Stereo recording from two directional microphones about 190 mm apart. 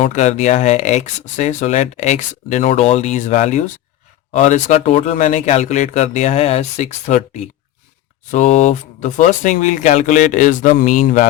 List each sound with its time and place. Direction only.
0.0 s speech: 40° left (ahead or behind)